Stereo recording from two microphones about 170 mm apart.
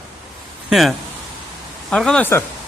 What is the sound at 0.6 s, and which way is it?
Speech, centre (ahead or behind).